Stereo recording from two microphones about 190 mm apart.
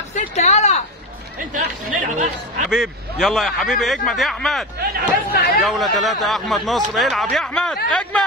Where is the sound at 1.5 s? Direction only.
40° right (ahead or behind).